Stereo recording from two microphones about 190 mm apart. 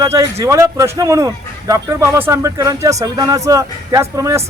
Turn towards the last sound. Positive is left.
turn(degrees=-15)  # may be behind; listen again after turning